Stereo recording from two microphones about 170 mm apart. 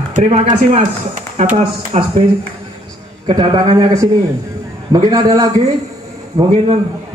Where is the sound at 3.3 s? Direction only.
25° right (ahead or behind).